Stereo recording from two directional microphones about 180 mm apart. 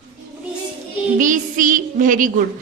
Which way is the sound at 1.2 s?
45° right (ahead or behind).